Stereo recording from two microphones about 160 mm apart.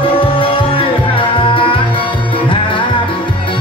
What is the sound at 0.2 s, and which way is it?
Music, 35° left (ahead or behind).